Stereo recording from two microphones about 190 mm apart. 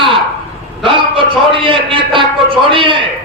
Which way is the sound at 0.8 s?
25° right (ahead or behind).